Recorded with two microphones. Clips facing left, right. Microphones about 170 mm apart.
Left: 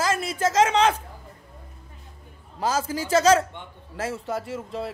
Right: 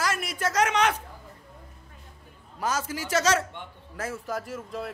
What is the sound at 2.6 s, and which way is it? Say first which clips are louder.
A man's voice: left 4 dB; 30° left (ahead or behind).